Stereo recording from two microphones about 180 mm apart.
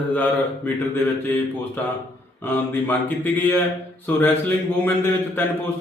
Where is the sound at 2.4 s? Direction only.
10° left (ahead or behind).